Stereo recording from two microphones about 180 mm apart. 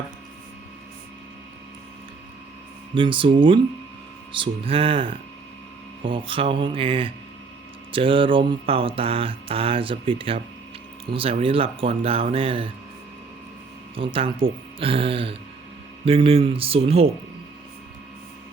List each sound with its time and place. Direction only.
2.9 s mantra: 30° right (ahead or behind)
11.1 s speech: 30° right (ahead or behind)
13.9 s speech: 30° right (ahead or behind)